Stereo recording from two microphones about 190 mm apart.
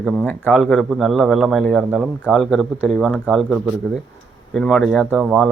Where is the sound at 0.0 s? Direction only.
5° left (ahead or behind).